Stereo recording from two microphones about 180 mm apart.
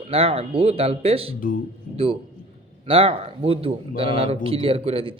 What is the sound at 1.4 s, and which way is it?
Speech, 50° left (ahead or behind).